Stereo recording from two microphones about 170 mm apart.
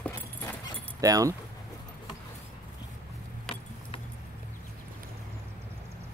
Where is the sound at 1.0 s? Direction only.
20° right (ahead or behind).